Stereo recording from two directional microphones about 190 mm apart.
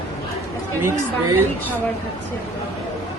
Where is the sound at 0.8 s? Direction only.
10° right (ahead or behind).